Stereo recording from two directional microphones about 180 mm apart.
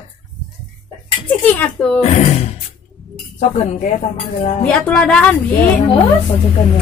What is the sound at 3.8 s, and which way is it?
Speech, 40° left (ahead or behind).